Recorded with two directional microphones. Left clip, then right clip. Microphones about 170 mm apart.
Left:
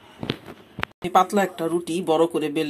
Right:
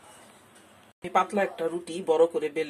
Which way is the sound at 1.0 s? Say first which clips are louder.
Left 6 dB; 40° left (ahead or behind).